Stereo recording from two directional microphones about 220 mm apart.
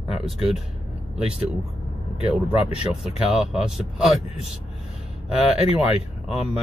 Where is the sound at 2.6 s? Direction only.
30° left (ahead or behind).